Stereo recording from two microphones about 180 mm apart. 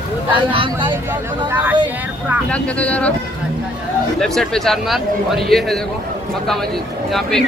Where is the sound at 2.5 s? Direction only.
5° left (ahead or behind).